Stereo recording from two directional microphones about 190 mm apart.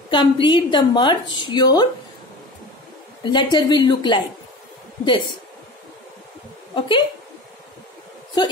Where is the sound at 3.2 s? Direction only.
25° left (ahead or behind).